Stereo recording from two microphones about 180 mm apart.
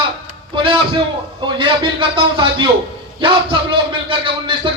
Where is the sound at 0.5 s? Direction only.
30° right (ahead or behind).